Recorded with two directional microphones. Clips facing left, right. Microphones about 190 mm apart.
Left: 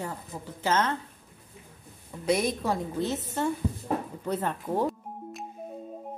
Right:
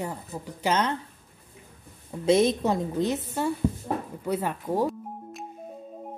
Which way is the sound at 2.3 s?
25° right (ahead or behind).